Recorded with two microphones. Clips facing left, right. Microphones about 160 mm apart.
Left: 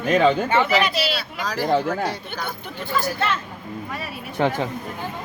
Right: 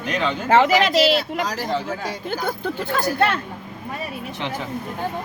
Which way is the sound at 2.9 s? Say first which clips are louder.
Right 2 dB; 65° right (ahead or behind).